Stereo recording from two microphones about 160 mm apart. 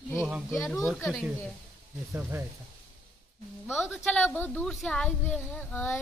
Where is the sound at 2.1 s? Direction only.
15° right (ahead or behind).